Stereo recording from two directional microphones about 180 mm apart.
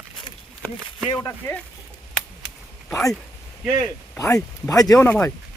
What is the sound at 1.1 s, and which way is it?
Speech, 15° left (ahead or behind).